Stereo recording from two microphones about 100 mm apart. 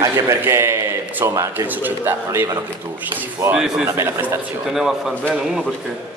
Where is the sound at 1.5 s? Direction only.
20° right (ahead or behind).